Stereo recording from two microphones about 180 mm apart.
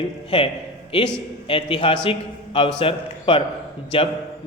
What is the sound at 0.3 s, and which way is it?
A man's voice, 30° left (ahead or behind).